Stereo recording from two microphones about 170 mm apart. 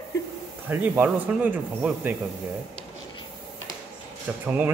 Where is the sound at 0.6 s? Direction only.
10° right (ahead or behind).